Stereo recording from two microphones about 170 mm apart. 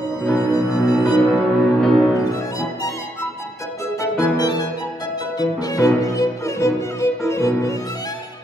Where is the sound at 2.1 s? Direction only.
20° left (ahead or behind).